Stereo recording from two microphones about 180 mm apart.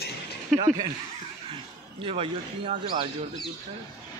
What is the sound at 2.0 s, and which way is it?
Speech, 30° right (ahead or behind).